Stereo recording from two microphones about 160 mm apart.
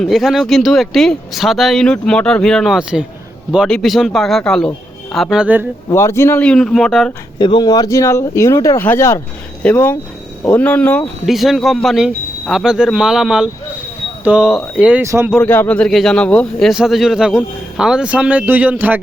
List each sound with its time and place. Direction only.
0.0 s speech: centre (ahead or behind)
5.9 s speech: 15° left (ahead or behind); by 7.1 s centre (ahead or behind)
7.3 s speech: 25° left (ahead or behind); by 11.1 s 10° left (ahead or behind)
11.3 s speech: centre (ahead or behind)
15.0 s speech: 15° right (ahead or behind)
15.4 s speech: 10° left (ahead or behind); by 18.9 s 10° right (ahead or behind)